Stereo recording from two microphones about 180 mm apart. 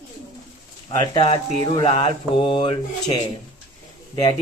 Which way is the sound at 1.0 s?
25° left (ahead or behind).